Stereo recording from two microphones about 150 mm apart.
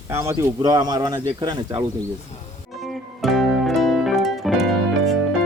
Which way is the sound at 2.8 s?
Centre (ahead or behind).